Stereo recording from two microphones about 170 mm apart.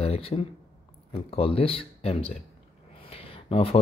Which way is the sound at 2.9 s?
35° left (ahead or behind).